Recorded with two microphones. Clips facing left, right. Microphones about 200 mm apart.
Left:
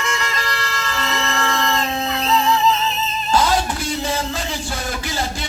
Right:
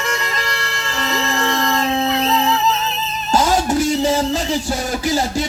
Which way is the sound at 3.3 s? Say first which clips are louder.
Right 3 dB; 45° right (ahead or behind).